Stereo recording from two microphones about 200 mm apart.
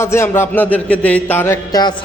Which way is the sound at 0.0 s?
10° left (ahead or behind).